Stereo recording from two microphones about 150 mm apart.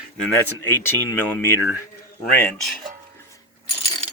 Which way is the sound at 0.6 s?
15° left (ahead or behind).